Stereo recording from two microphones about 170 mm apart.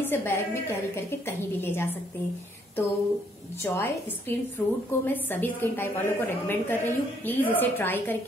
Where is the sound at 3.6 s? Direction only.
15° left (ahead or behind).